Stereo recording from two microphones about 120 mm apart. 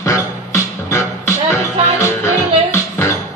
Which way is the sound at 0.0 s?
25° left (ahead or behind).